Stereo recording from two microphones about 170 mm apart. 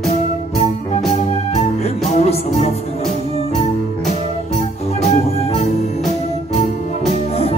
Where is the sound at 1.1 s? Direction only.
40° left (ahead or behind).